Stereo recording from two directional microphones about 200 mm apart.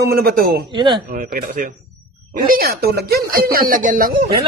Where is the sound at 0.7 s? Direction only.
20° right (ahead or behind).